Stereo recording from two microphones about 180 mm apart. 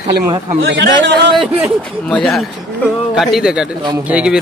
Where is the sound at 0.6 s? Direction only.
80° right.